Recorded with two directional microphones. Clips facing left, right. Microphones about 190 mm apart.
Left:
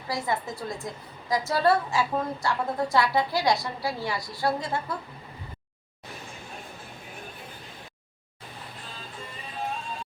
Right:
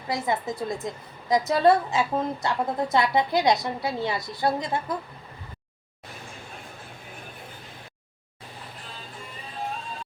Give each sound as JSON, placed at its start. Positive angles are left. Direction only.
{"t": 0.1, "sound": "a woman's voice", "side_deg": -20}